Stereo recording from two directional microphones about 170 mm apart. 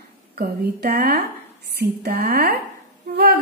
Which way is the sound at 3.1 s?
70° right (ahead or behind).